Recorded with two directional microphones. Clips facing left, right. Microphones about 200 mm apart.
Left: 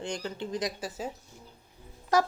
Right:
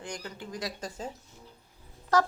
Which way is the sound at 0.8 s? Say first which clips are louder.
Left 2 dB; 5° left (ahead or behind).